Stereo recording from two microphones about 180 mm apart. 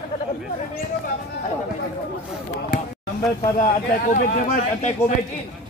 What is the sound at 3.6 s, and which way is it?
A man's voice, 45° left (ahead or behind).